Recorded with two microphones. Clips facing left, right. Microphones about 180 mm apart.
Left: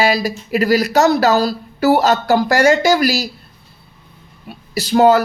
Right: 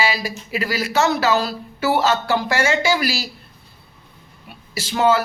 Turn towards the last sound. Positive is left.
turn(degrees=40)  # may be behind; listen again after turning